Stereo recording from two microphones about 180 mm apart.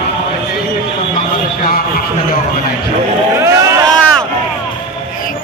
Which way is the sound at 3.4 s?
15° right (ahead or behind).